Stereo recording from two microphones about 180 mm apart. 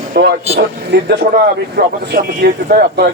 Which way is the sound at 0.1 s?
65° right (ahead or behind).